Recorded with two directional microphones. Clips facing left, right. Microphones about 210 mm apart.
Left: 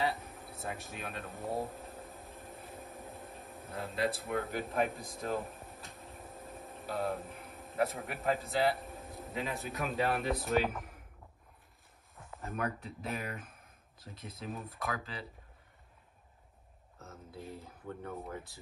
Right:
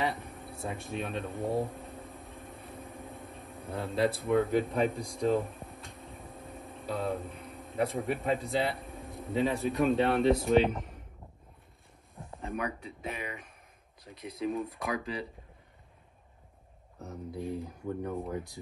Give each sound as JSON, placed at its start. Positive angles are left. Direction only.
{"t": 0.0, "sound": "a sound", "side_deg": 0}
{"t": 12.4, "sound": "speech", "side_deg": 0}
{"t": 17.0, "sound": "speech", "side_deg": -15}